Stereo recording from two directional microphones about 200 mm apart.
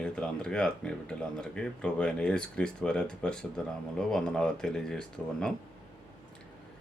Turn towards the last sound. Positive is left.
turn(degrees=5)  # may be behind; listen again after turning